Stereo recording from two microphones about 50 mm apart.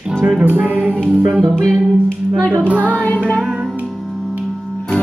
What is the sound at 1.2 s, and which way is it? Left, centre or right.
Speech, centre.